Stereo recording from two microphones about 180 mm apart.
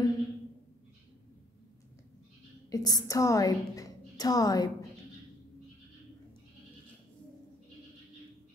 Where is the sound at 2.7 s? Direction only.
20° left (ahead or behind).